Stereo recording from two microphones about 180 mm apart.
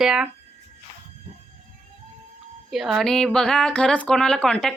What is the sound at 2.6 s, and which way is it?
A woman's voice, centre (ahead or behind).